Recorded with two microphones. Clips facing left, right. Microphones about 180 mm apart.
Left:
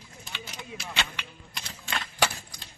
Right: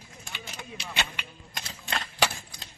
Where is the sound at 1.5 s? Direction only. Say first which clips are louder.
Right 1 dB; 40° right (ahead or behind).